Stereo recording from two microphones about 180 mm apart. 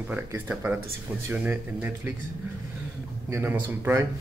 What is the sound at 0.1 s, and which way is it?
Speech, 10° right (ahead or behind).